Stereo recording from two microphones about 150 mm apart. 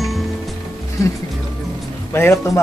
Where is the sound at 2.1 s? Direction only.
15° left (ahead or behind).